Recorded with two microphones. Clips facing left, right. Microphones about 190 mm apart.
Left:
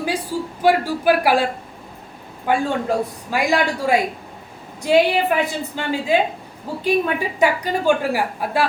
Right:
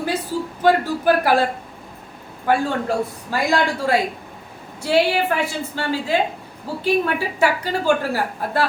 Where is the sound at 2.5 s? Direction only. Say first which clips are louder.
Even; 15° left (ahead or behind).